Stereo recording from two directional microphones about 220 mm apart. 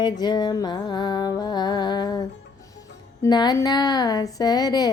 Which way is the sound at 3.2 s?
20° left (ahead or behind).